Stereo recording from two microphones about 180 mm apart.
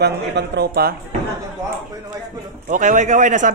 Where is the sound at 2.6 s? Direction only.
45° right (ahead or behind).